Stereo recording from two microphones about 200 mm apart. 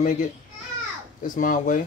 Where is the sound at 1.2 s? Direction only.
40° left (ahead or behind).